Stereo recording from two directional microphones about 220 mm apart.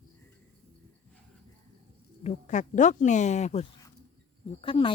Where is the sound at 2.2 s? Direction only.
35° left (ahead or behind).